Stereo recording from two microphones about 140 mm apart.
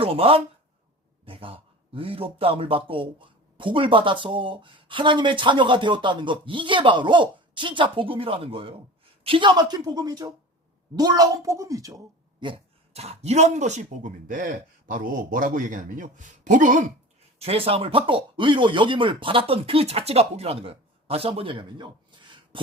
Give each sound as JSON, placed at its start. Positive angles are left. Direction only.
{"t": 0.0, "sound": "a man's voice", "side_deg": -40}
{"t": 12.4, "sound": "speech", "side_deg": -40}
{"t": 17.4, "sound": "a man's voice", "side_deg": -45}